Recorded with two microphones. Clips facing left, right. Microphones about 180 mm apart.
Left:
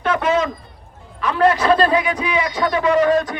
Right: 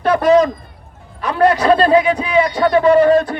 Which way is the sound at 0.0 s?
35° right (ahead or behind).